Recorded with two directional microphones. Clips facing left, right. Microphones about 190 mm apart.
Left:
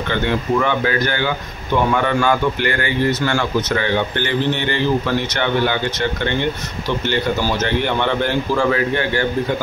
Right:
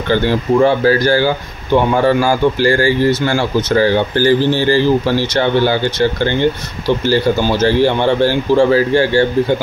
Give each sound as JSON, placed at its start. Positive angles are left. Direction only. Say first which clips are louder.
{"t": 0.1, "sound": "speech", "louder": "right 6 dB", "side_deg": -30}
{"t": 7.6, "sound": "speech", "louder": "right 10 dB", "side_deg": -30}